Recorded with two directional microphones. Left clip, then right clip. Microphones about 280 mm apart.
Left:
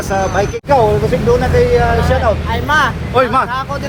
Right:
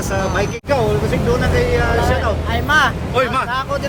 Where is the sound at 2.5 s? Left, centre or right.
Centre.